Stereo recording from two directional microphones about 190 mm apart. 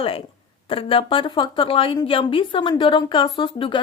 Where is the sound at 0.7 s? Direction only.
30° left (ahead or behind).